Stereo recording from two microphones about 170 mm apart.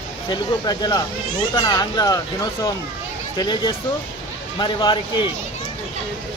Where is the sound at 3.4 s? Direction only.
25° left (ahead or behind).